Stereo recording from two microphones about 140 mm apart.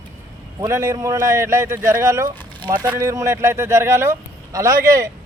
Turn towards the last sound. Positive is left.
turn(degrees=-25)  # may be behind; listen again after turning